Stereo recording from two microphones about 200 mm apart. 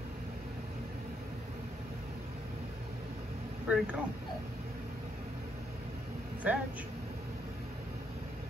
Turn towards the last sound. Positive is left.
turn(degrees=-5)  # may be behind; listen again after turning